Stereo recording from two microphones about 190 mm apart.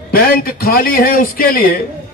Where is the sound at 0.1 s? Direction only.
50° left (ahead or behind).